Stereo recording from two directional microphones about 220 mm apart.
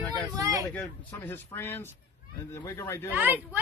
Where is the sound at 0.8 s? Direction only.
10° left (ahead or behind).